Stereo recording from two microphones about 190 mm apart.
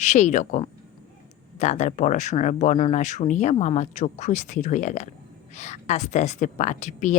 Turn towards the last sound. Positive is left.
turn(degrees=40)  # may be behind; listen again after turning